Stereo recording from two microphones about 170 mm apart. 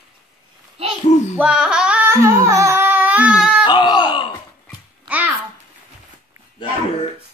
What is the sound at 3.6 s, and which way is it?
Groan, 25° left (ahead or behind).